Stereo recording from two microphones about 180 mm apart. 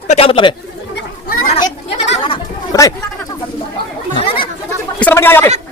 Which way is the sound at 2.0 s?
35° left (ahead or behind).